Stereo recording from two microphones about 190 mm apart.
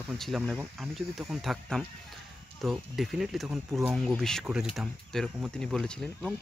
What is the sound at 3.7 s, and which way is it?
Speech, 15° right (ahead or behind).